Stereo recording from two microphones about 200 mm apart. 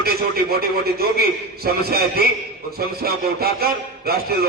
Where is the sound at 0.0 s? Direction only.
50° right (ahead or behind).